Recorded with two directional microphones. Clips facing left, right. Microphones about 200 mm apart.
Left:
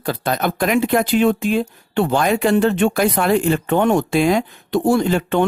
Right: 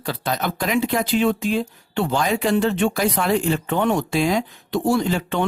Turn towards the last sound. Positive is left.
turn(degrees=55)  # may be behind; listen again after turning